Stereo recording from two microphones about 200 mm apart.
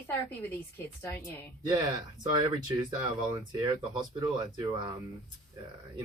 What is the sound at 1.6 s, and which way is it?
Speech, 20° right (ahead or behind).